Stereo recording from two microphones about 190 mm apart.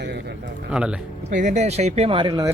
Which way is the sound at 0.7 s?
5° right (ahead or behind).